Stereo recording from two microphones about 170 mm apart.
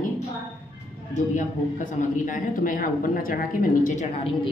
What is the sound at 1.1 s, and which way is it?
A man's voice, 50° left (ahead or behind).